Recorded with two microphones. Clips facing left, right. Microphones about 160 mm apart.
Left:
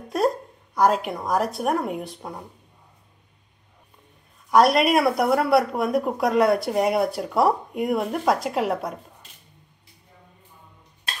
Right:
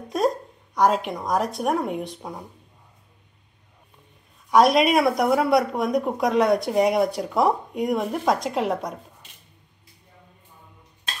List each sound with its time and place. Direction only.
0.7 s speech: centre (ahead or behind)
4.5 s speech: centre (ahead or behind)